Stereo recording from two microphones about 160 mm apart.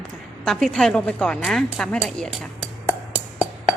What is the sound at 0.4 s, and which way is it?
A woman's voice, centre (ahead or behind).